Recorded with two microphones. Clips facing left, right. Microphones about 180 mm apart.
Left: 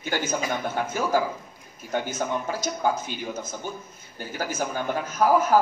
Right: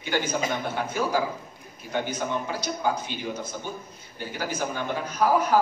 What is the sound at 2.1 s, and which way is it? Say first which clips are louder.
A man's voice: left 1 dB; 45° left (ahead or behind).